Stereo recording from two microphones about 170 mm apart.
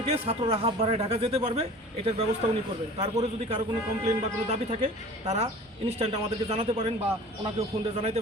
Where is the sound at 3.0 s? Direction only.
35° right (ahead or behind).